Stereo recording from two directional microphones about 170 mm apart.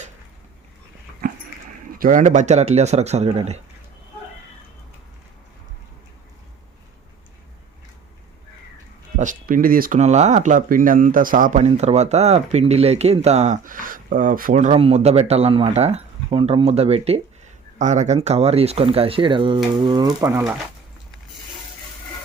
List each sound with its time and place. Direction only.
2.0 s speech: 50° right (ahead or behind)
9.1 s speech: 50° right (ahead or behind); by 19.5 s 30° right (ahead or behind)
19.8 s frying: 25° right (ahead or behind)